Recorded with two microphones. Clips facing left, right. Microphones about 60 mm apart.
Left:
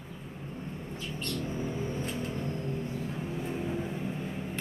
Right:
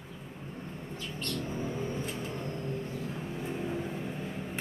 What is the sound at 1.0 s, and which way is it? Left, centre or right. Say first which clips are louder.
Vehicle: left 1 dB; centre.